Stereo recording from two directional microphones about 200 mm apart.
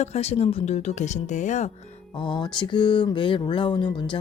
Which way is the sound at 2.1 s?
25° left (ahead or behind).